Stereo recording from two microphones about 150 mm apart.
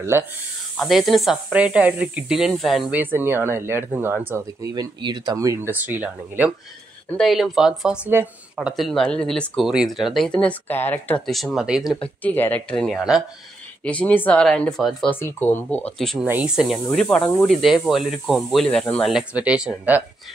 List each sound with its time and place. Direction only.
0.1 s speech: 15° right (ahead or behind)
0.7 s speech: centre (ahead or behind)
3.0 s speech: 15° right (ahead or behind)
4.7 s speech: 30° right (ahead or behind); by 6.5 s 10° right (ahead or behind)
7.2 s speech: centre (ahead or behind)
12.2 s speech: 10° left (ahead or behind)
15.0 s speech: 15° left (ahead or behind); by 20.0 s 5° right (ahead or behind)